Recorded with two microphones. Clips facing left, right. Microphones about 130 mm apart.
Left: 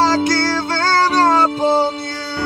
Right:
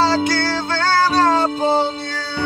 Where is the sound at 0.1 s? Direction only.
40° left (ahead or behind).